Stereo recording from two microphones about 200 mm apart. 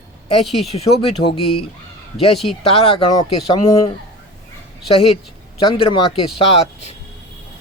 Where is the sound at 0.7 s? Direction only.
25° left (ahead or behind).